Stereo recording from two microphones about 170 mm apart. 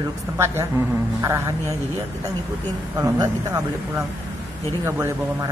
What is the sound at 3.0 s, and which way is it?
A man's voice, 20° right (ahead or behind).